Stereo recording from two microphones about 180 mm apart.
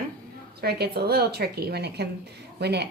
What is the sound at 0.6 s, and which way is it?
A woman's voice, 65° right (ahead or behind).